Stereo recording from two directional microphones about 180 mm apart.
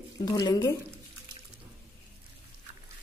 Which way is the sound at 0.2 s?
20° left (ahead or behind).